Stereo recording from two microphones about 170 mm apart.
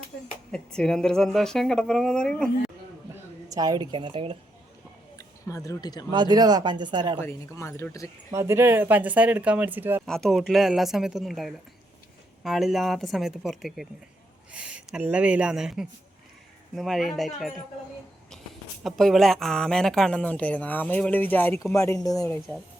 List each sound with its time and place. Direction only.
0.5 s speech: 5° left (ahead or behind)
3.5 s speech: 20° right (ahead or behind)
5.1 s speech: 20° left (ahead or behind)
6.1 s speech: 25° right (ahead or behind)
7.2 s speech: 15° left (ahead or behind)
8.3 s speech: 15° right (ahead or behind)
10.1 s speech: centre (ahead or behind)
18.8 s speech: centre (ahead or behind); by 22.4 s 20° left (ahead or behind)